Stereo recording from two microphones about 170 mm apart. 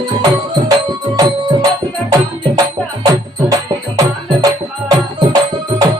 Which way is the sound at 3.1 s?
20° right (ahead or behind).